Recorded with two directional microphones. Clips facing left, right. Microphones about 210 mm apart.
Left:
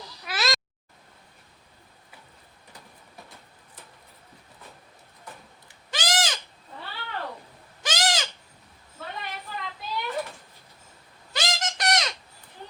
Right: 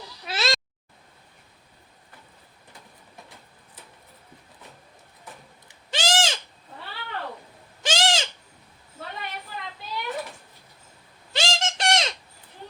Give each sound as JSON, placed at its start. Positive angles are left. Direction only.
{"t": 0.3, "sound": "cat", "side_deg": -25}
{"t": 5.6, "sound": "owl", "side_deg": -30}
{"t": 7.8, "sound": "owl", "side_deg": -30}
{"t": 11.3, "sound": "a sound", "side_deg": -30}